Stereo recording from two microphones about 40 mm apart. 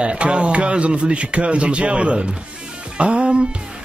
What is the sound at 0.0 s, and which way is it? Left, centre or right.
Speech, right.